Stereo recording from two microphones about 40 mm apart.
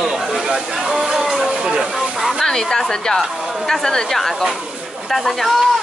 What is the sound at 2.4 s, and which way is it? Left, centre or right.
Speech, centre.